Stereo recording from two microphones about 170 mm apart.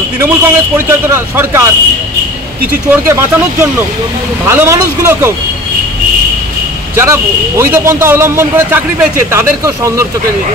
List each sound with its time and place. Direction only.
0.2 s a man's voice: 15° right (ahead or behind)
2.9 s a man's voice: 15° right (ahead or behind)
4.5 s a man's voice: 15° right (ahead or behind)
7.0 s a man's voice: 15° right (ahead or behind)